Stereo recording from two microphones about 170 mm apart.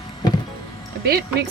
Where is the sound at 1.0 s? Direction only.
65° right (ahead or behind).